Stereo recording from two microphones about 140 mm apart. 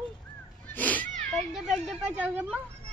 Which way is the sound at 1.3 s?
Centre (ahead or behind).